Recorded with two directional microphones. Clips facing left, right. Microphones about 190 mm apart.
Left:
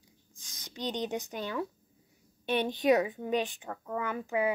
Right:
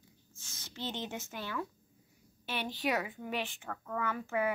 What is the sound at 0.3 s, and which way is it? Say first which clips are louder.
A woman's voice: left 2 dB; 15° left (ahead or behind).